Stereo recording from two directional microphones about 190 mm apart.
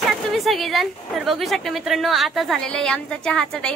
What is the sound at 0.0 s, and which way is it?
A woman's voice, centre (ahead or behind).